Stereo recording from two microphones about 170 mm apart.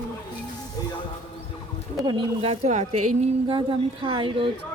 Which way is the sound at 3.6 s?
30° right (ahead or behind).